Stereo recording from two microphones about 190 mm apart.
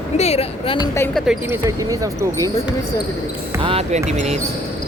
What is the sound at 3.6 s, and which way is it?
Speech, 30° right (ahead or behind).